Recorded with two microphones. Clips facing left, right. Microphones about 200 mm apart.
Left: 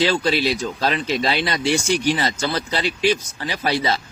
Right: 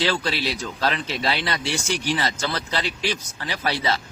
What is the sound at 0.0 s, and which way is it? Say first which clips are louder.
Speech: left 5 dB; 15° left (ahead or behind).